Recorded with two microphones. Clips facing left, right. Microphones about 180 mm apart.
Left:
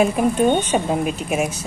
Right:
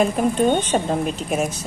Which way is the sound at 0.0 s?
10° left (ahead or behind).